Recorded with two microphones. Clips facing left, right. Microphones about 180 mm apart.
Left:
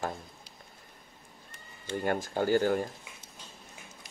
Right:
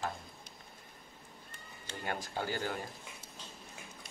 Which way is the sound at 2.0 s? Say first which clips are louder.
Left 8 dB; 45° left (ahead or behind).